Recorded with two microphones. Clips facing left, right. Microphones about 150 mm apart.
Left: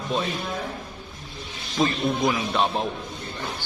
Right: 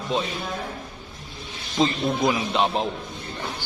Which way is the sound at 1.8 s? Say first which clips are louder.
Right 1 dB; 20° right (ahead or behind).